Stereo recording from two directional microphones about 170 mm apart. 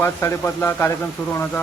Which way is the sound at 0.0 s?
15° left (ahead or behind).